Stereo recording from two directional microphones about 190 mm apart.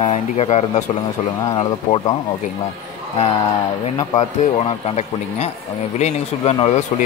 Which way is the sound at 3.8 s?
35° left (ahead or behind).